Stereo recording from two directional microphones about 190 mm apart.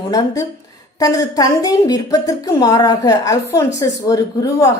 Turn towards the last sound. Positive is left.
turn(degrees=20)  # may be behind; listen again after turning